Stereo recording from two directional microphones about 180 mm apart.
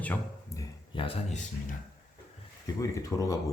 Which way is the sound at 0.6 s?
30° left (ahead or behind).